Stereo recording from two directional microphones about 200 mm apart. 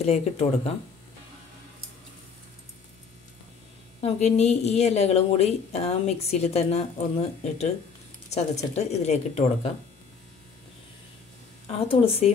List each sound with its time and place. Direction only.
0.0 s speech: 30° left (ahead or behind)
4.0 s speech: 35° left (ahead or behind)
11.6 s a woman's voice: 30° left (ahead or behind)